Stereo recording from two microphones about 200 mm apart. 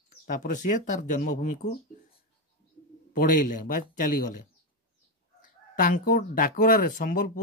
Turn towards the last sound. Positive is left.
turn(degrees=45)  # may be behind; listen again after turning